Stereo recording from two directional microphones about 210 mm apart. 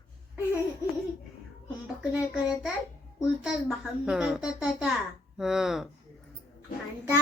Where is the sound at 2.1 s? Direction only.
5° right (ahead or behind).